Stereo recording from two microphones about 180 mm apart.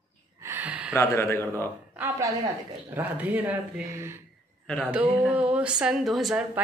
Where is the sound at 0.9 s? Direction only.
15° left (ahead or behind).